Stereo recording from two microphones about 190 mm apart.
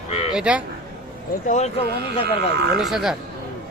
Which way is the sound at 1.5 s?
35° left (ahead or behind).